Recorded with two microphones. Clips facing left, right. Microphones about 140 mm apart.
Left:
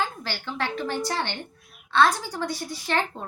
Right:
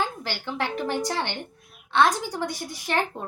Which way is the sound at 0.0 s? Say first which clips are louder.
Right 1 dB; 15° right (ahead or behind).